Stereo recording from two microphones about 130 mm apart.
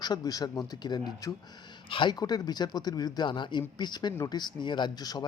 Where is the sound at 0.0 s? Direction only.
30° left (ahead or behind).